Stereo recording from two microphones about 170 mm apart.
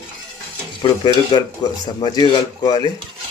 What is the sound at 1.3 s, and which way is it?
Speech, 25° left (ahead or behind).